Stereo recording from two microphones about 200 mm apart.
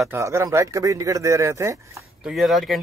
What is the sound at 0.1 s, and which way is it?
Speech, 15° right (ahead or behind).